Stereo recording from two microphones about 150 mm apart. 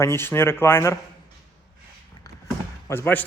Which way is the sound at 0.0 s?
15° left (ahead or behind).